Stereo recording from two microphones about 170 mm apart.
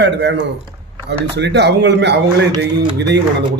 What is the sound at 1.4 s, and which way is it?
Speech, 85° right.